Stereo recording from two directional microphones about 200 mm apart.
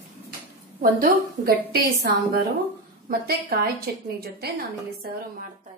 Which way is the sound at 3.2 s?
50° right (ahead or behind).